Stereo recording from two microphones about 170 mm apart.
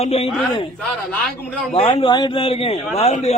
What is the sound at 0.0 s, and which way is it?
Speech, 35° left (ahead or behind).